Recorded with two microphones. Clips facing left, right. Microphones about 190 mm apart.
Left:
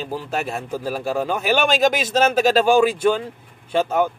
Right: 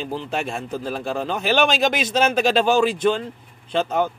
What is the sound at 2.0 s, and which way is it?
Speech, 45° left (ahead or behind).